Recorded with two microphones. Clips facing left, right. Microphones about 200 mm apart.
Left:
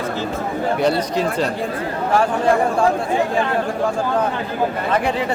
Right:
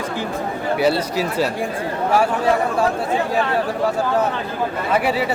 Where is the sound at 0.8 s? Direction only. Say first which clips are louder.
Right 1 dB; 5° right (ahead or behind).